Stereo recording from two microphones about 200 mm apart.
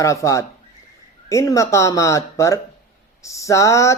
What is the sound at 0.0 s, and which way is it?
Speech, 15° left (ahead or behind).